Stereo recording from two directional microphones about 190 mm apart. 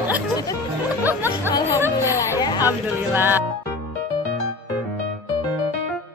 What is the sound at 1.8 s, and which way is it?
Music, 15° right (ahead or behind).